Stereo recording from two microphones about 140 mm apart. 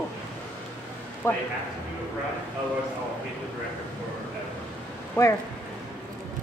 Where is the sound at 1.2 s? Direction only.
20° left (ahead or behind).